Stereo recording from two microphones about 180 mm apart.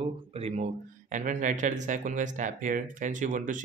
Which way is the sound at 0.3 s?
35° right (ahead or behind).